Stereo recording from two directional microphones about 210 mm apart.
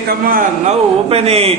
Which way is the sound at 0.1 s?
40° right (ahead or behind).